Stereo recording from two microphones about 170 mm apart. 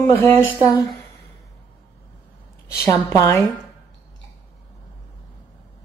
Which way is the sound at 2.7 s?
15° left (ahead or behind).